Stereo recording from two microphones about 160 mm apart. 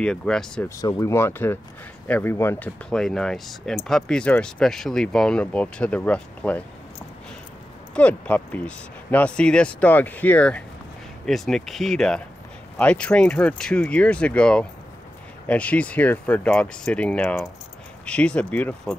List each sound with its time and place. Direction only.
0.0 s speech: 5° left (ahead or behind)
0.7 s speech: 20° left (ahead or behind)
2.9 s speech: 5° left (ahead or behind)
7.9 s speech: 10° left (ahead or behind)